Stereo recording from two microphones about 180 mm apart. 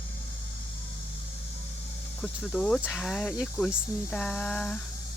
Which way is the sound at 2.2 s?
Centre (ahead or behind).